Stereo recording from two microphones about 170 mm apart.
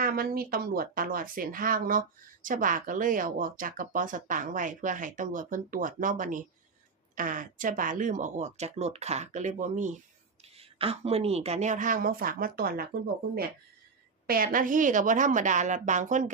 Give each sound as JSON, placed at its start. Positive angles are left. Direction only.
{"t": 0.0, "sound": "speech", "side_deg": -60}
{"t": 10.6, "sound": "speech", "side_deg": -35}
{"t": 14.3, "sound": "speech", "side_deg": -55}